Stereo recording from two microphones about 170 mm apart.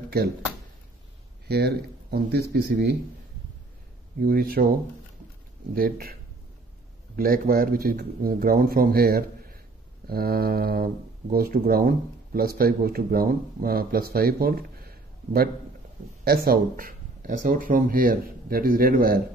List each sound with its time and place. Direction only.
1.5 s speech: 70° right (ahead or behind)
4.2 s speech: 60° right (ahead or behind)
5.8 s speech: 60° right (ahead or behind)
7.2 s speech: 60° right (ahead or behind)